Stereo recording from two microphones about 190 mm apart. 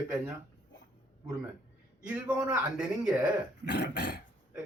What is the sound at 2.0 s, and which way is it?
A man's voice, 5° right (ahead or behind).